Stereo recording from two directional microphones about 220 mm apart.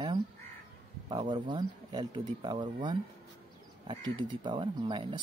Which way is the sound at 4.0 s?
20° right (ahead or behind).